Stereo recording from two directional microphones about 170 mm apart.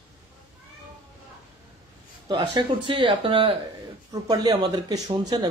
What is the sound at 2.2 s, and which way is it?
Speech, 30° right (ahead or behind).